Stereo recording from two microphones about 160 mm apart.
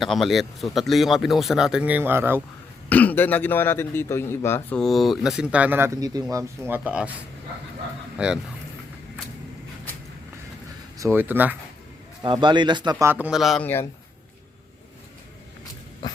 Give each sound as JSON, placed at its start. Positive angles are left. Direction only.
{"t": 0.0, "sound": "speech", "side_deg": 0}
{"t": 2.9, "sound": "a man's voice", "side_deg": 10}
{"t": 4.8, "sound": "speech", "side_deg": 0}
{"t": 8.2, "sound": "speech", "side_deg": -5}
{"t": 10.9, "sound": "speech", "side_deg": -15}
{"t": 12.2, "sound": "speech", "side_deg": -30}
{"t": 13.1, "sound": "speech", "side_deg": -10}